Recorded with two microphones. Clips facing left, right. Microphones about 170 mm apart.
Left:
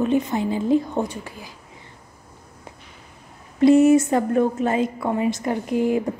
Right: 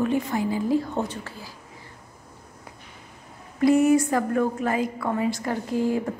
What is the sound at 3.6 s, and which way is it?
A woman's voice, 25° left (ahead or behind).